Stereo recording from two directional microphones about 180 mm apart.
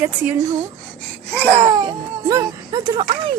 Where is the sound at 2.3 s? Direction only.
20° right (ahead or behind).